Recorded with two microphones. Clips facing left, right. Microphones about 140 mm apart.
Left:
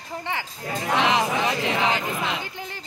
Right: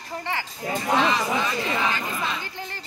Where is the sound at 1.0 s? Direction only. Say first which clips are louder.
Left 5 dB; 70° left (ahead or behind).